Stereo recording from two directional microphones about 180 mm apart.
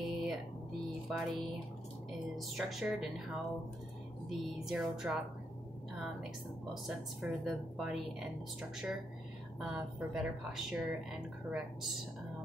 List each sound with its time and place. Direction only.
0.1 s a sound: centre (ahead or behind)
1.0 s music: centre (ahead or behind)
2.3 s speech: centre (ahead or behind)
4.3 s speech: centre (ahead or behind)
6.7 s speech: centre (ahead or behind)